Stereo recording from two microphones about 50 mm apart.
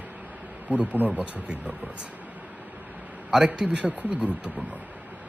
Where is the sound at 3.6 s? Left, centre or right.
Centre.